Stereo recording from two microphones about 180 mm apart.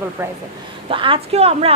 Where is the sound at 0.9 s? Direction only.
30° right (ahead or behind).